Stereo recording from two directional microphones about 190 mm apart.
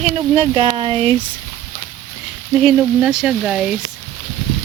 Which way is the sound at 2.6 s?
5° right (ahead or behind).